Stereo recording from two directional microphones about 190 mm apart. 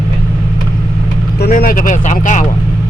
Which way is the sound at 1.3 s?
55° left (ahead or behind).